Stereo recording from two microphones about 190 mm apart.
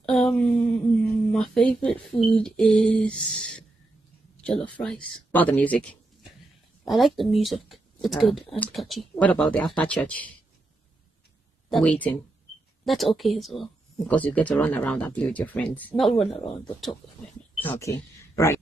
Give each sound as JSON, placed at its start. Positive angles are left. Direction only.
{"t": 0.0, "sound": "a sound", "side_deg": 0}
{"t": 1.3, "sound": "speech", "side_deg": 0}
{"t": 4.4, "sound": "a sound", "side_deg": 5}
{"t": 4.7, "sound": "speech", "side_deg": 5}
{"t": 11.7, "sound": "speech", "side_deg": 5}
{"t": 17.6, "sound": "speech", "side_deg": 15}